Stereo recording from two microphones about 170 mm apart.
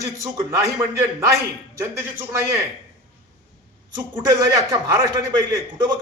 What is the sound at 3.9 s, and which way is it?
A man's voice, 20° right (ahead or behind).